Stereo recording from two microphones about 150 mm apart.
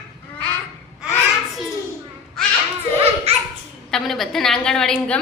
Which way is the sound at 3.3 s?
45° right (ahead or behind).